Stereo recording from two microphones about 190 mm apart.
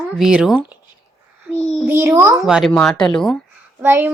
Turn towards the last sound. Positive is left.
turn(degrees=-10)  # may be behind; listen again after turning